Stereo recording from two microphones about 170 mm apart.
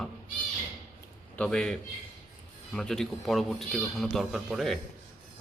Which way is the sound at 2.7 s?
5° left (ahead or behind).